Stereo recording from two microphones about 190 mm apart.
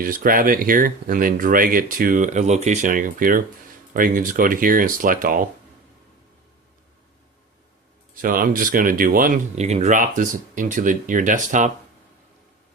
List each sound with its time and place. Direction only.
0.0 s speech: 50° right (ahead or behind)
8.1 s speech: 45° right (ahead or behind)